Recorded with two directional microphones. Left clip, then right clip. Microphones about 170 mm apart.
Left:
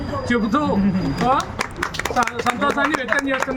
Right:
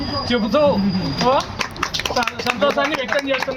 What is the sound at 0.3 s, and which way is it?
Speech, 15° left (ahead or behind).